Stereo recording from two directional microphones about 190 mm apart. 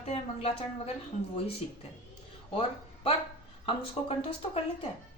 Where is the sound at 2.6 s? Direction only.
30° left (ahead or behind).